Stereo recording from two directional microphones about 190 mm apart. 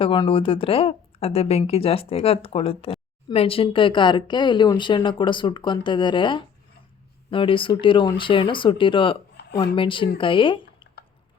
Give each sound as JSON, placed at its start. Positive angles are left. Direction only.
{"t": 0.0, "sound": "speech", "side_deg": 25}
{"t": 9.4, "sound": "a sound", "side_deg": 65}
{"t": 9.7, "sound": "speech", "side_deg": 25}